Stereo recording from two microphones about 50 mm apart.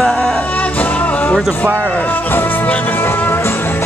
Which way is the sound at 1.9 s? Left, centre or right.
Left.